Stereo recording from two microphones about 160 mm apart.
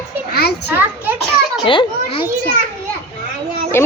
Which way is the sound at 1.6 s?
30° left (ahead or behind).